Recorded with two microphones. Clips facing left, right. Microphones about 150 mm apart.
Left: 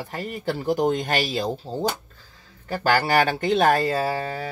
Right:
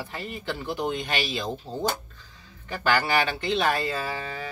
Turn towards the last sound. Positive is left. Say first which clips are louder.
# left 7 dB
turn(degrees=40)  # may be behind; listen again after turning